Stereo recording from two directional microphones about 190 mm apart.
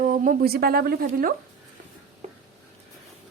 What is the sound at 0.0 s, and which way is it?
Speech, 45° right (ahead or behind).